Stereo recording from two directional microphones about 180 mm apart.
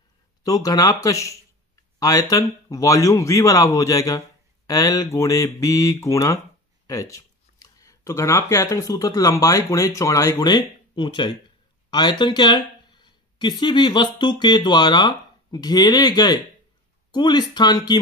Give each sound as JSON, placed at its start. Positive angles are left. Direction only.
{"t": 0.4, "sound": "speech", "side_deg": 20}